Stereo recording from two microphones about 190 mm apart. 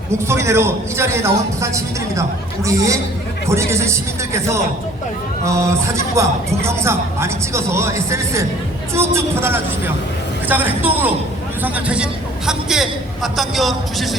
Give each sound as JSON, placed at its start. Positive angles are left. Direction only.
{"t": 0.1, "sound": "a man's voice", "side_deg": -15}